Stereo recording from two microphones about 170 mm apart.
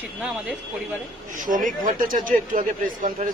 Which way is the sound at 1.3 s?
50° right (ahead or behind).